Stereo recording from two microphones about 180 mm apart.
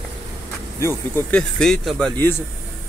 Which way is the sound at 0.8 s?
10° left (ahead or behind).